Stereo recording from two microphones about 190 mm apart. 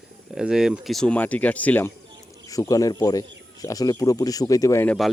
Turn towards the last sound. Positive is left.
turn(degrees=10)  # may be behind; listen again after turning